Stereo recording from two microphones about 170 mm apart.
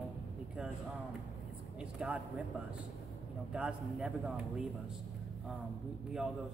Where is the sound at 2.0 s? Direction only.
5° right (ahead or behind).